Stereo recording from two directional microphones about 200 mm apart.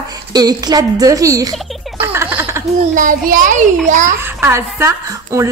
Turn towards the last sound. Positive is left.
turn(degrees=-15)  # may be behind; listen again after turning